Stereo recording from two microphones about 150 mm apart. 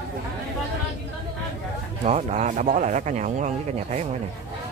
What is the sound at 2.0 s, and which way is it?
Speech, 45° right (ahead or behind).